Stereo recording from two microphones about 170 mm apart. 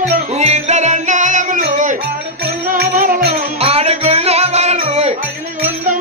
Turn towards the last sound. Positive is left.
turn(degrees=-40)  # may be behind; listen again after turning